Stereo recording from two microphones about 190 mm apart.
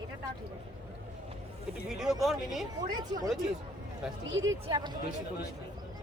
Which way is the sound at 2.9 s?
20° right (ahead or behind).